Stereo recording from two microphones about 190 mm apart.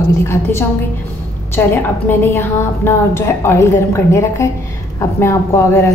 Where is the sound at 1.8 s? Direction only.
10° left (ahead or behind).